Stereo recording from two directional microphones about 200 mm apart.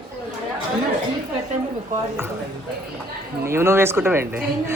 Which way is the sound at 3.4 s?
10° right (ahead or behind).